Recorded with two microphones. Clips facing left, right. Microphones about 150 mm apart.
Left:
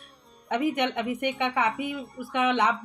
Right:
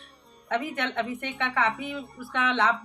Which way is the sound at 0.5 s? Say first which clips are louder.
Left 3 dB; 15° left (ahead or behind).